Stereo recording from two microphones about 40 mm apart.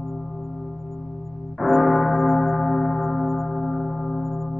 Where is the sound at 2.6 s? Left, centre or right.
Left.